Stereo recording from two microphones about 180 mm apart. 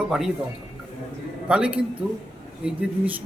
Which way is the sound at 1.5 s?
5° right (ahead or behind).